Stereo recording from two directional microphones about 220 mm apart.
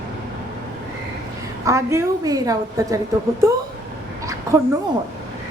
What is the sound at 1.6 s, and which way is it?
A woman's voice, 15° right (ahead or behind).